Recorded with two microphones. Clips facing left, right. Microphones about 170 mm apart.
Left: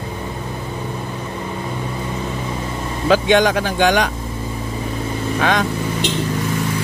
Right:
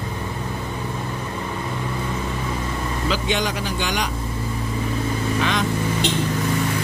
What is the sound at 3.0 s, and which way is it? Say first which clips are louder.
Speech: left 11 dB; 70° left (ahead or behind).